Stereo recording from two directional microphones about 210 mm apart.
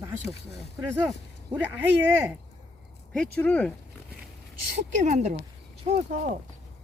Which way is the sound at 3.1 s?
5° left (ahead or behind).